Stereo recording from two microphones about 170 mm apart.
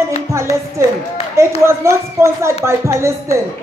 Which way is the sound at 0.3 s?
15° right (ahead or behind).